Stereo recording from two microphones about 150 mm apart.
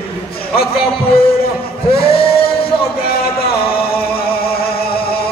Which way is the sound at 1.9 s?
35° left (ahead or behind).